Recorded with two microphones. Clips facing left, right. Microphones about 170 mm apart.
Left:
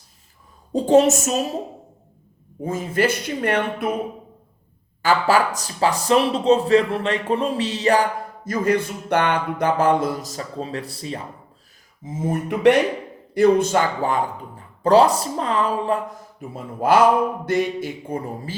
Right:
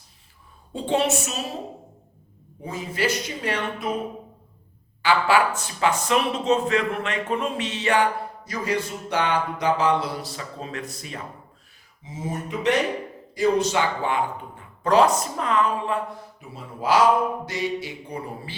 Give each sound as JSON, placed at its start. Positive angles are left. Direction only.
{"t": 0.7, "sound": "speech", "side_deg": 40}
{"t": 2.6, "sound": "speech", "side_deg": 50}
{"t": 5.0, "sound": "speech", "side_deg": 40}
{"t": 8.4, "sound": "speech", "side_deg": 55}
{"t": 12.0, "sound": "a sound", "side_deg": 50}
{"t": 13.3, "sound": "speech", "side_deg": 55}